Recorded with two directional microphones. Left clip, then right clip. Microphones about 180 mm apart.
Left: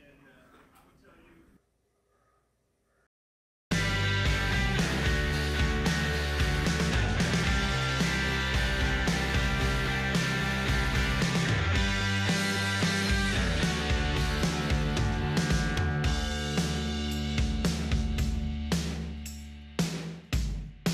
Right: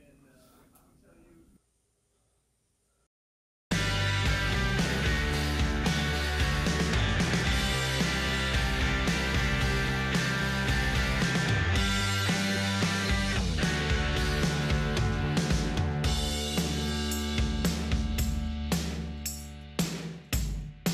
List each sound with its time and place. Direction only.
3.6 s music: centre (ahead or behind)